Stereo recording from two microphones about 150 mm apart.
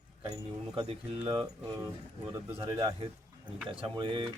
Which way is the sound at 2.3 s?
15° right (ahead or behind).